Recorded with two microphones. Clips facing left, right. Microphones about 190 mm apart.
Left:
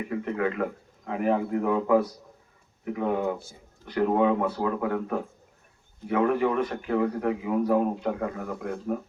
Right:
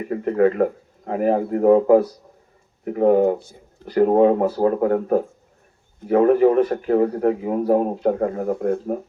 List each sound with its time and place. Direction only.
0.1 s a man's voice: 40° right (ahead or behind)